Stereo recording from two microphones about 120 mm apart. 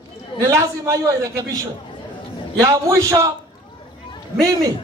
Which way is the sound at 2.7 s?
25° right (ahead or behind).